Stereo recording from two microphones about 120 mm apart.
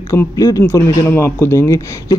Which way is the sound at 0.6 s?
20° left (ahead or behind).